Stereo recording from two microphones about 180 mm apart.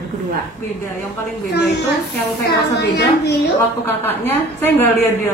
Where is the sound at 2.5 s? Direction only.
65° left (ahead or behind).